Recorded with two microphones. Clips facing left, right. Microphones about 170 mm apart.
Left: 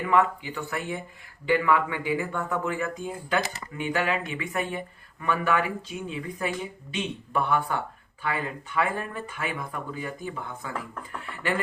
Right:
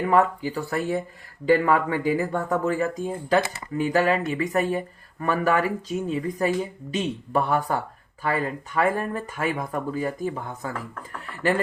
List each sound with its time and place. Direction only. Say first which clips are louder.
0.0 s speech: right 3 dB; 40° right (ahead or behind)